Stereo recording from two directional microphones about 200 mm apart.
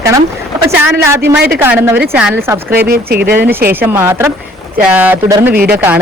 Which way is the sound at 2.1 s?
10° right (ahead or behind).